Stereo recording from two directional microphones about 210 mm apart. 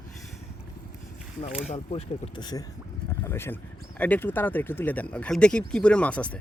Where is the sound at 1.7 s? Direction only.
30° left (ahead or behind); by 6.4 s 5° left (ahead or behind).